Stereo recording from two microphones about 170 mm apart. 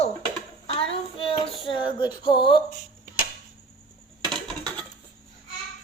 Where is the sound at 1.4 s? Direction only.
30° left (ahead or behind).